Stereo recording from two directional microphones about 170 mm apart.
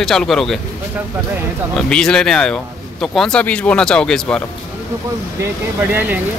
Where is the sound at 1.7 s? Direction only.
5° left (ahead or behind).